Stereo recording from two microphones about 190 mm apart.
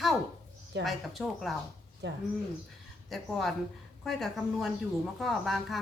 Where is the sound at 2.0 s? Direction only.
65° right (ahead or behind).